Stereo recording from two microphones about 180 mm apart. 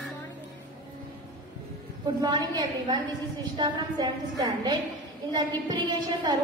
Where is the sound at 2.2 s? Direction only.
25° right (ahead or behind).